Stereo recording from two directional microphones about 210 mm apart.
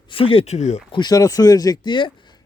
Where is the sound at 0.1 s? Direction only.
25° left (ahead or behind).